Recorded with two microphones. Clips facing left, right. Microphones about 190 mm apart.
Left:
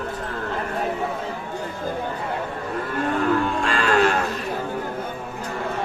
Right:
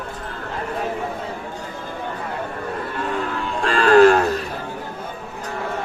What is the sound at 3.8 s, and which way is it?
Cattle, 40° right (ahead or behind).